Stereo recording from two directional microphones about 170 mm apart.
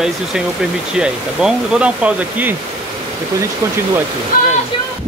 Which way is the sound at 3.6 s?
20° right (ahead or behind).